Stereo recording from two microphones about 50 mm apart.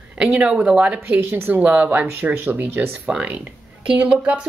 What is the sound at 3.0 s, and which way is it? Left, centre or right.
Speech, right.